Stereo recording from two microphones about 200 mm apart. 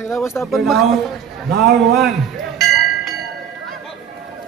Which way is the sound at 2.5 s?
Centre (ahead or behind).